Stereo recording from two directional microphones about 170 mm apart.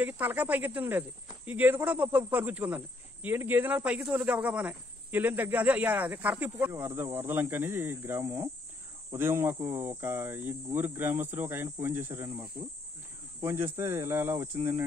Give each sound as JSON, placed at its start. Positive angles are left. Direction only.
{"t": 0.0, "sound": "speech", "side_deg": -10}